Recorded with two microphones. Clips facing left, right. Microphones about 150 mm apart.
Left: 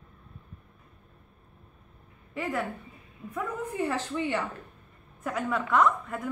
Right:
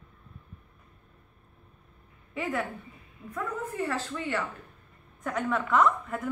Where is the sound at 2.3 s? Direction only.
Centre (ahead or behind); by 4.4 s 20° left (ahead or behind).